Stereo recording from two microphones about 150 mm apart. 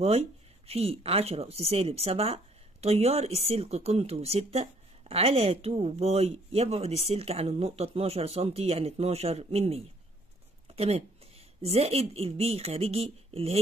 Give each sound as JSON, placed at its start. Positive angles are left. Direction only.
{"t": 0.0, "sound": "speech", "side_deg": -40}